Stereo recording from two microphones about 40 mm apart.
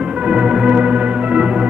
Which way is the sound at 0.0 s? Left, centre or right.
Right.